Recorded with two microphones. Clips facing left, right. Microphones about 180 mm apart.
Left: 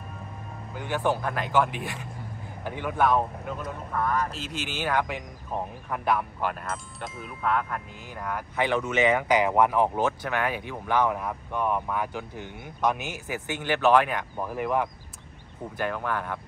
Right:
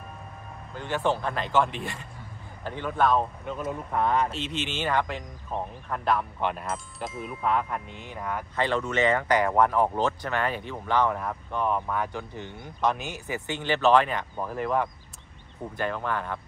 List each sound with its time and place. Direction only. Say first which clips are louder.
0.7 s speech: even; 10° left (ahead or behind)
3.9 s speech: right 2 dB; 25° right (ahead or behind)
4.3 s speech: right 2 dB; 5° left (ahead or behind)